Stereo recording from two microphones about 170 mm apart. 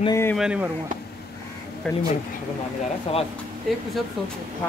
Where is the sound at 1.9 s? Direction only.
5° left (ahead or behind).